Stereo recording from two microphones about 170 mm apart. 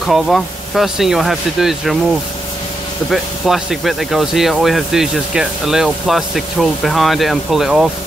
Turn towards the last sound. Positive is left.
turn(degrees=0)  # may be behind; listen again after turning